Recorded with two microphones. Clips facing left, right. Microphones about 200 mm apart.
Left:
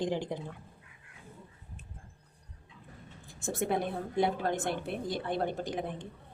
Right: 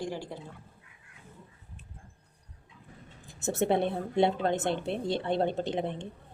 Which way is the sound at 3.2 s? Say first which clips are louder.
Right 5 dB; 20° right (ahead or behind).